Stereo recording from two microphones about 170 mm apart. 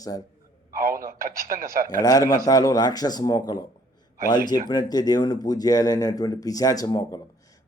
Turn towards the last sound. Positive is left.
turn(degrees=25)  # may be behind; listen again after turning